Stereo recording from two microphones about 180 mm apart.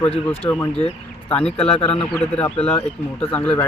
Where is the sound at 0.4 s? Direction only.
15° left (ahead or behind).